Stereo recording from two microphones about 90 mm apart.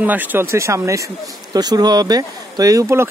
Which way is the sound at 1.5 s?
50° right (ahead or behind).